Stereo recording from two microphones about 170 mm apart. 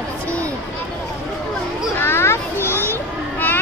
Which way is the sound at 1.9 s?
15° left (ahead or behind).